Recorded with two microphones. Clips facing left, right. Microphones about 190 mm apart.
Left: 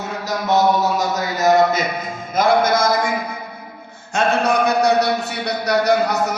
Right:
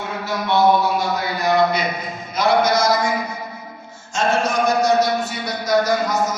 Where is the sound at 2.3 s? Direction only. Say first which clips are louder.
Left 1 dB; 50° left (ahead or behind).